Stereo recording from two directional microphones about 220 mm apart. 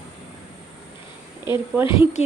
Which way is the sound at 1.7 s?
10° right (ahead or behind).